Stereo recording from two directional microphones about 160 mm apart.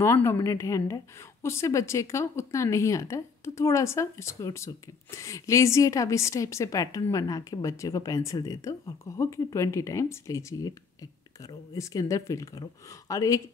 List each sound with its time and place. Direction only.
0.0 s a woman's voice: 15° left (ahead or behind)